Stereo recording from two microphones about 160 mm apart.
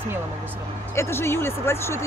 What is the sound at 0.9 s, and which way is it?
Speech, 15° left (ahead or behind).